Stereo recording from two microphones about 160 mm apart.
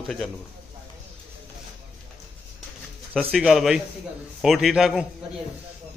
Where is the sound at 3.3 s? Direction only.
Centre (ahead or behind).